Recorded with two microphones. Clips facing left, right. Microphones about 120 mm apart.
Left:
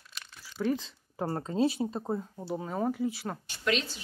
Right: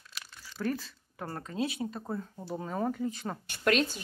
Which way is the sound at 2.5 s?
5° left (ahead or behind).